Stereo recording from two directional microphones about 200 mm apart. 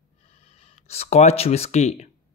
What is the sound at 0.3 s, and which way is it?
Speech, 30° left (ahead or behind).